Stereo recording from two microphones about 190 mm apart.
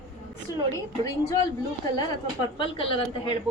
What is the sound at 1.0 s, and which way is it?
Speech, 15° left (ahead or behind).